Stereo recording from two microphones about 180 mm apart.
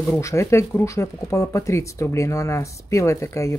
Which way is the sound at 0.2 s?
15° left (ahead or behind).